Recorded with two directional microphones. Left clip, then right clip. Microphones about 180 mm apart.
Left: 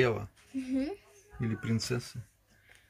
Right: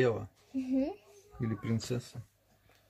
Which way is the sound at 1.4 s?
Centre (ahead or behind).